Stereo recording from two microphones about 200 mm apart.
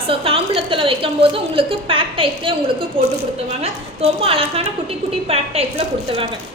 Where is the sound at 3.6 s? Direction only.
30° right (ahead or behind).